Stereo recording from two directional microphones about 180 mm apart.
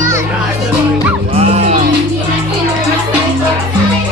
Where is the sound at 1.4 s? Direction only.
35° right (ahead or behind).